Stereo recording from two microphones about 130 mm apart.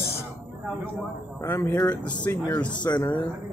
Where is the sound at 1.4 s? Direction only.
20° left (ahead or behind).